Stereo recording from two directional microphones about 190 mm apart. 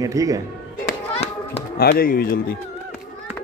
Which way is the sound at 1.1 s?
35° left (ahead or behind).